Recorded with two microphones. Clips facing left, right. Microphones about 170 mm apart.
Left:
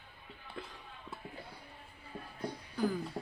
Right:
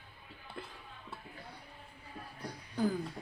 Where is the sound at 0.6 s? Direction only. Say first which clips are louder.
Left 1 dB; centre (ahead or behind).